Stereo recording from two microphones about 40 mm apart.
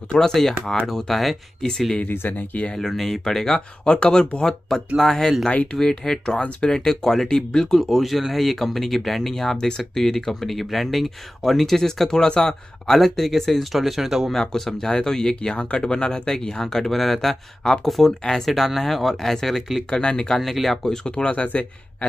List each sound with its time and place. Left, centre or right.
0.2 s speech: centre
2.2 s speech: left
2.8 s speech: centre
7.8 s speech: centre
14.3 s speech: centre
19.9 s speech: left
20.3 s speech: centre
20.9 s speech: left